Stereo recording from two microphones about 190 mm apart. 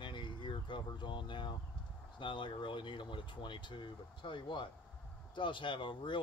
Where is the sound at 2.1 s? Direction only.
25° left (ahead or behind).